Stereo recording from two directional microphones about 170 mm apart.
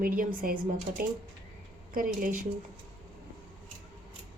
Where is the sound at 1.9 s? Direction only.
55° right (ahead or behind).